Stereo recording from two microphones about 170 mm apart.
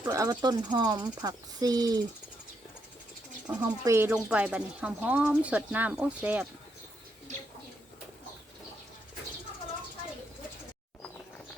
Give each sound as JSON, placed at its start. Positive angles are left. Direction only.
{"t": 0.0, "sound": "speech", "side_deg": -20}
{"t": 3.6, "sound": "speech", "side_deg": -15}
{"t": 4.1, "sound": "speech", "side_deg": -5}